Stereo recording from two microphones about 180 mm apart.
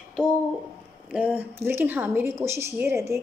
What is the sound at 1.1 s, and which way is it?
A woman's voice, 10° right (ahead or behind).